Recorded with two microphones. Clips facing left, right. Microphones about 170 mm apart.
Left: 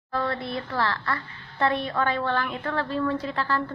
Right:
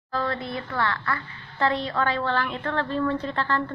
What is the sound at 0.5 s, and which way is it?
Speech, 30° left (ahead or behind).